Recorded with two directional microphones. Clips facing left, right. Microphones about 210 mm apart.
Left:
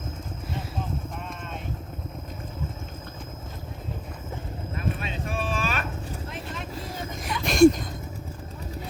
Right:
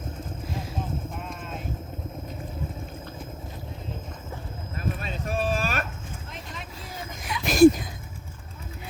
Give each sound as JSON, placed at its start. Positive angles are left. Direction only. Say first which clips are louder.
{"t": 4.9, "sound": "clip-clop", "louder": "right 2 dB", "side_deg": -40}
{"t": 6.3, "sound": "vehicle", "louder": "left 5 dB", "side_deg": 0}
{"t": 7.3, "sound": "a sound", "louder": "right 1 dB", "side_deg": 0}